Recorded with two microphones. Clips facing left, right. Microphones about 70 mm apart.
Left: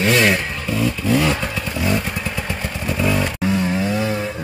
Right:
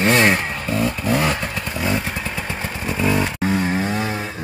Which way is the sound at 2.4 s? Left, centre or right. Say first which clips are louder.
Left 1 dB; centre.